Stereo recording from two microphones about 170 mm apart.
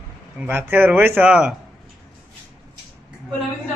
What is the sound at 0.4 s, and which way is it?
Speech, 15° right (ahead or behind).